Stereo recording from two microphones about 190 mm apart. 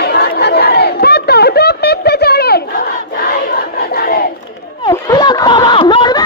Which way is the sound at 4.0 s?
55° left (ahead or behind).